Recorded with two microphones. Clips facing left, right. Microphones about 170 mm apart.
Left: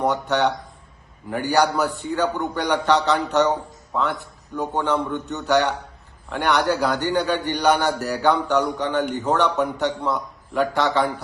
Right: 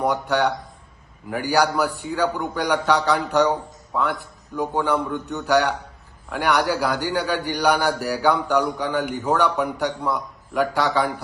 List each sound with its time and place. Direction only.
0.0 s a man's voice: 10° right (ahead or behind)